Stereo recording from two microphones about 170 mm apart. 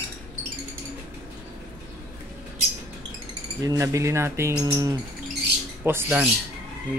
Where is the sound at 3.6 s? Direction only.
20° right (ahead or behind).